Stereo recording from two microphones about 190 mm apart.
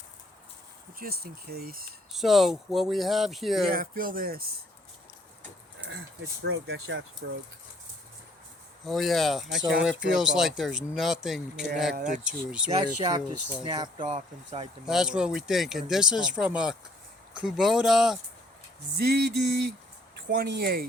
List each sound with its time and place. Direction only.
0.9 s speech: 55° right (ahead or behind)
2.1 s speech: centre (ahead or behind)
3.7 s speech: 50° right (ahead or behind)
6.4 s speech: 90° right
7.2 s speech: 70° right (ahead or behind)
8.8 s speech: centre (ahead or behind)
11.9 s speech: 45° right (ahead or behind)
12.2 s speech: 5° right (ahead or behind)
12.8 s speech: 20° right (ahead or behind)
14.8 s speech: 5° right (ahead or behind)
18.9 s speech: 60° right (ahead or behind)